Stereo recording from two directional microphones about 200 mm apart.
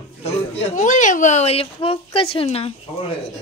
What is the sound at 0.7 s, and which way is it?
A child's voice, 40° left (ahead or behind).